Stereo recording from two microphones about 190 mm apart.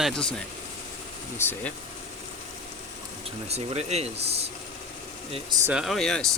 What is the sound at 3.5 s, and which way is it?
Speech, 35° right (ahead or behind).